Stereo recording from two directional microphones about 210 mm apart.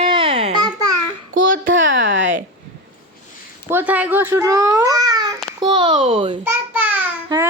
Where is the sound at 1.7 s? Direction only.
65° right (ahead or behind).